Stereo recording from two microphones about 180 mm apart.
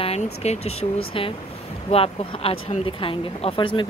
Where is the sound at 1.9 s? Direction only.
30° left (ahead or behind).